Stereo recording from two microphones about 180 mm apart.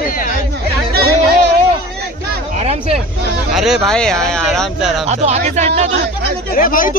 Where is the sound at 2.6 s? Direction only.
35° right (ahead or behind).